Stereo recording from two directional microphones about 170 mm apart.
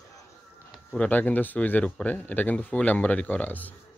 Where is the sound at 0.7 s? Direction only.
5° left (ahead or behind).